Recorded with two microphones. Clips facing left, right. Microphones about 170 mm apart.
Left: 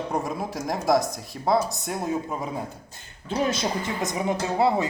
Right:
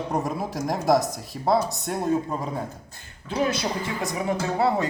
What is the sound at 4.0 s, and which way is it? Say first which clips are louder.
Speech: even; 20° left (ahead or behind).